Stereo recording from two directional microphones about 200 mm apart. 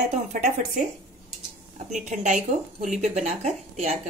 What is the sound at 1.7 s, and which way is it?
A woman's voice, 35° right (ahead or behind).